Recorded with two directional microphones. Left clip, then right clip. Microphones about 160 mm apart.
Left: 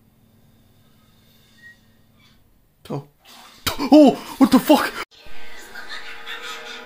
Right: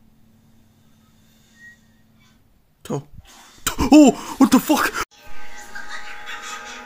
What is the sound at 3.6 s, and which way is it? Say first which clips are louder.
Speech: even; 30° right (ahead or behind).